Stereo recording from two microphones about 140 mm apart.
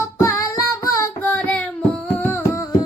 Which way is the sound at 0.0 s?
20° left (ahead or behind).